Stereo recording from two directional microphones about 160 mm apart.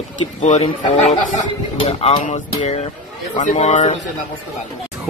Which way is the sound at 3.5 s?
45° left (ahead or behind).